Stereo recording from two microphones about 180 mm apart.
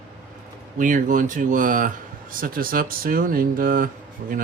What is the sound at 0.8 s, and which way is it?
Speech, 45° right (ahead or behind).